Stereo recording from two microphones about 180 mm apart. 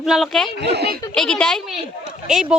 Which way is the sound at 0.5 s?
65° right (ahead or behind).